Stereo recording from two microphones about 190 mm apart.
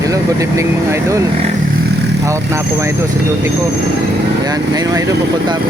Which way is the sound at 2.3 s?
15° right (ahead or behind).